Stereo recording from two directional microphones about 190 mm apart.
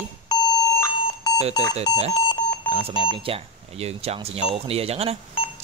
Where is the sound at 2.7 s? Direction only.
30° right (ahead or behind).